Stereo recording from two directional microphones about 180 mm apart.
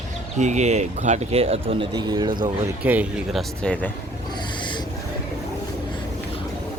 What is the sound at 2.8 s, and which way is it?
Speech, 10° right (ahead or behind).